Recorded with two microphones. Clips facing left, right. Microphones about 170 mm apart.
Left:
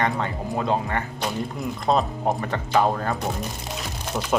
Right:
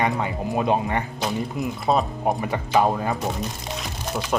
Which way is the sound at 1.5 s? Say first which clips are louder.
Even; 5° right (ahead or behind).